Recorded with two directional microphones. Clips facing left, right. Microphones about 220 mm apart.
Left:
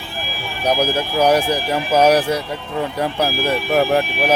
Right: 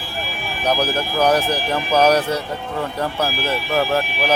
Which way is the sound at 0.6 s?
10° left (ahead or behind).